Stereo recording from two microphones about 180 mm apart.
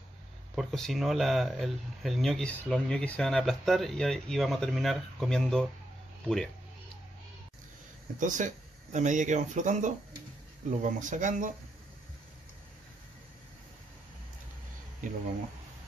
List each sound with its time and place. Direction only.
0.6 s speech: centre (ahead or behind)
8.2 s speech: 45° right (ahead or behind)